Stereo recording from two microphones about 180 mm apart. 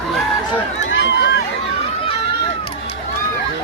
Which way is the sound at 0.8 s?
85° left.